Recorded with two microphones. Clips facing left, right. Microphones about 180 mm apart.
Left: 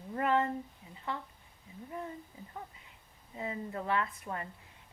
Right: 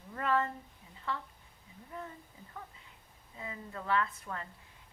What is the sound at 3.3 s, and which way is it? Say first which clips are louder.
A woman's voice: left 6 dB; 30° left (ahead or behind).